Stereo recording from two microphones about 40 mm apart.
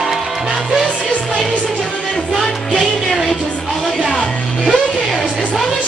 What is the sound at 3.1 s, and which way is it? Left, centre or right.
Music, centre.